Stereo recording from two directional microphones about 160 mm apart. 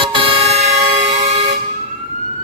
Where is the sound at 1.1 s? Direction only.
40° right (ahead or behind).